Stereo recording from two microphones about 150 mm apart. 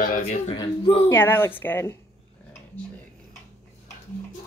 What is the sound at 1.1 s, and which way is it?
Speech, 15° left (ahead or behind).